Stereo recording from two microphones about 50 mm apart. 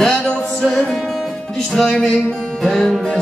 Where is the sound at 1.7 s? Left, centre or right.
Centre.